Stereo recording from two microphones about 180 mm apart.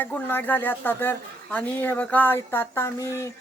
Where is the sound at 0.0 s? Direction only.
10° left (ahead or behind).